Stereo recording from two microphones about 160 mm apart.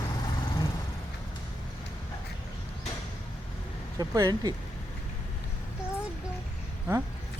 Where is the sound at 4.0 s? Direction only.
20° right (ahead or behind).